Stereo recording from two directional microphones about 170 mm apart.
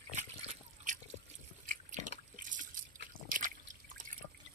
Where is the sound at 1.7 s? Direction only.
50° right (ahead or behind).